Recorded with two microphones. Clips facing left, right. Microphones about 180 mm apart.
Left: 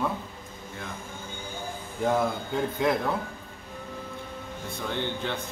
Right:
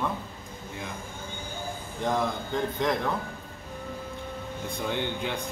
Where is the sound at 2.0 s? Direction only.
5° left (ahead or behind).